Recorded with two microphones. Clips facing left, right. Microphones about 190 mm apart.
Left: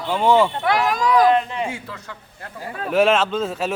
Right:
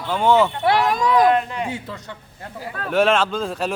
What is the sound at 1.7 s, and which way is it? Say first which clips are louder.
Speech: right 2 dB; 20° right (ahead or behind).